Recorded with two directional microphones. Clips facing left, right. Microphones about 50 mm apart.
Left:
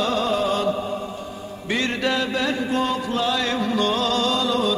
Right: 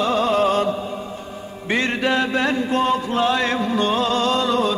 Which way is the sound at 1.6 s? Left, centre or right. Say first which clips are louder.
Right 3 dB; right.